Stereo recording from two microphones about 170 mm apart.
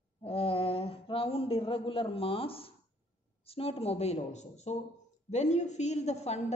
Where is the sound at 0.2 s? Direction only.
35° left (ahead or behind).